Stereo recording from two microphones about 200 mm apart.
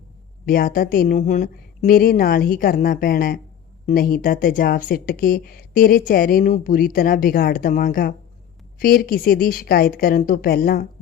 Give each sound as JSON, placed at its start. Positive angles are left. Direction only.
{"t": 0.4, "sound": "speech", "side_deg": 45}